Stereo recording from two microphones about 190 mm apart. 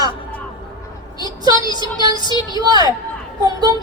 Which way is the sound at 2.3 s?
25° left (ahead or behind).